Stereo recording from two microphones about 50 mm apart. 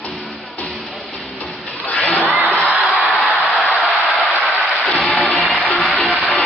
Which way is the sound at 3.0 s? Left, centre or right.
Left.